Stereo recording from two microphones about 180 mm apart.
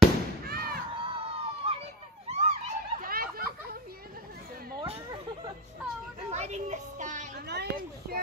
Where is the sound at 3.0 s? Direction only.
55° right (ahead or behind).